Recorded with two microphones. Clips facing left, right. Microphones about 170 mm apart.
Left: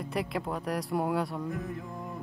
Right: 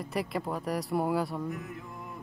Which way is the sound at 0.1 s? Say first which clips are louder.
Even; centre (ahead or behind).